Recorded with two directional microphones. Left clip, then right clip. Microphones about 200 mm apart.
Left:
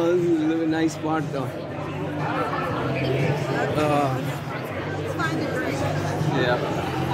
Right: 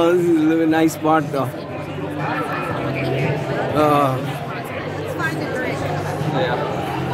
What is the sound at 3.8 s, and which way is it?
Speech, 45° right (ahead or behind).